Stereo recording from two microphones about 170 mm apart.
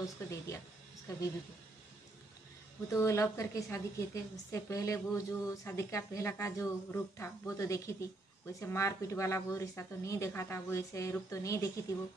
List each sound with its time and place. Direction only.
0.0 s speech: 20° left (ahead or behind)
2.9 s a woman's voice: 20° left (ahead or behind)